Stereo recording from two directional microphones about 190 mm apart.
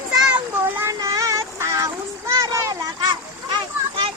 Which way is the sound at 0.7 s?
15° right (ahead or behind).